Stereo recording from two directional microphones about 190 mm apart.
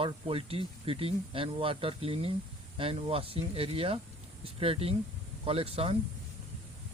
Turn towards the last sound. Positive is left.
turn(degrees=-30)  # may be behind; listen again after turning